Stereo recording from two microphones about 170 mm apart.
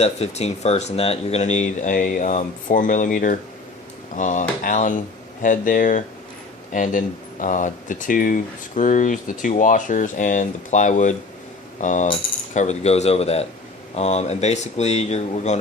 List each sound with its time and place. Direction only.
0.0 s speech: 40° left (ahead or behind)